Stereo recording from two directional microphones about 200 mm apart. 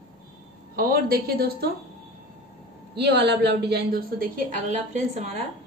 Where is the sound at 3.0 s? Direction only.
55° right (ahead or behind); by 5.4 s 35° right (ahead or behind).